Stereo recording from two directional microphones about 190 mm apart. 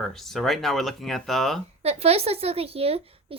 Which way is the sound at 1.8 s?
35° right (ahead or behind).